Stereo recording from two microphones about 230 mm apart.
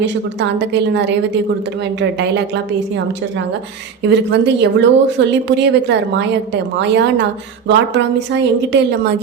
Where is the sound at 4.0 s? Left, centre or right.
Right.